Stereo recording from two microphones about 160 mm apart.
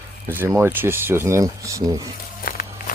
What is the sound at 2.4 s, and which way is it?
Walk, 60° left (ahead or behind).